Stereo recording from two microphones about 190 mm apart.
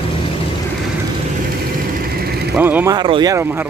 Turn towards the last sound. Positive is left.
turn(degrees=-20)  # may be behind; listen again after turning